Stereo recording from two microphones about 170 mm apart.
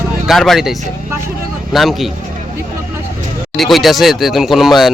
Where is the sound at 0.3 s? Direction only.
Centre (ahead or behind).